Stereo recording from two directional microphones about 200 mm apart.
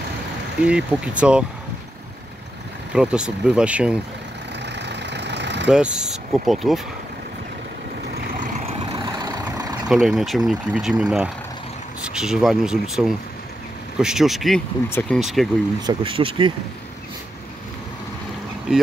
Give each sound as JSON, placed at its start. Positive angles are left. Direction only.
{"t": 0.6, "sound": "speech", "side_deg": -5}
{"t": 2.9, "sound": "speech", "side_deg": -5}
{"t": 4.6, "sound": "vehicle", "side_deg": -60}
{"t": 5.7, "sound": "speech", "side_deg": -5}
{"t": 8.1, "sound": "vehicle", "side_deg": -40}
{"t": 9.2, "sound": "vehicle", "side_deg": -20}
{"t": 9.8, "sound": "speech", "side_deg": 0}
{"t": 15.1, "sound": "speech", "side_deg": 0}
{"t": 15.8, "sound": "speech", "side_deg": -25}